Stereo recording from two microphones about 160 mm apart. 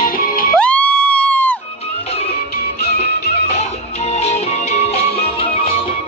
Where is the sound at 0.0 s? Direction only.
65° left (ahead or behind).